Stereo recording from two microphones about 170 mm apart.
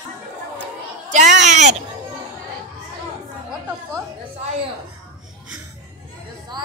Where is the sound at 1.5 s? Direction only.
45° right (ahead or behind).